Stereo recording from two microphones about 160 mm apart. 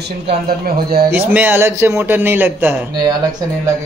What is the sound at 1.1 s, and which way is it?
Speech, 10° right (ahead or behind).